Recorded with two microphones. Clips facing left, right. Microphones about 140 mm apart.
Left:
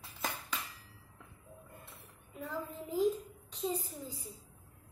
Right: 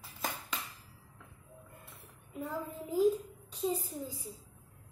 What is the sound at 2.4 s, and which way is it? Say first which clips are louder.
Child singing: right 2 dB; 10° right (ahead or behind).